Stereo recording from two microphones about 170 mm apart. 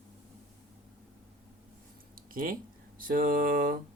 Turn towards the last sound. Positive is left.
turn(degrees=-55)  # may be behind; listen again after turning